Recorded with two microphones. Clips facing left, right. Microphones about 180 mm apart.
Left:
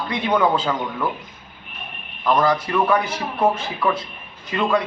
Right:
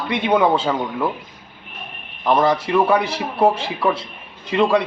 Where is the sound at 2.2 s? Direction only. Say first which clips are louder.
Right 2 dB; 25° right (ahead or behind).